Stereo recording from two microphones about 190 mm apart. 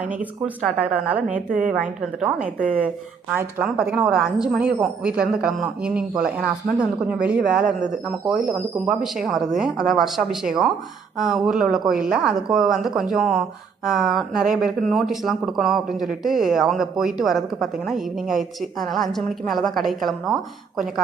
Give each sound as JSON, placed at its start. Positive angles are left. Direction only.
{"t": 0.2, "sound": "speech", "side_deg": -10}
{"t": 1.5, "sound": "a woman's voice", "side_deg": -45}
{"t": 1.8, "sound": "a woman's voice", "side_deg": -5}